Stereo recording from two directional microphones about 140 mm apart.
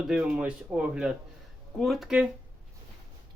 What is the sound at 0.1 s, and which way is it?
Speech, 5° right (ahead or behind).